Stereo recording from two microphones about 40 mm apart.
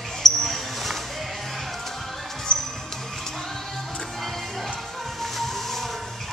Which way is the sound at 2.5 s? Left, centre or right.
Left.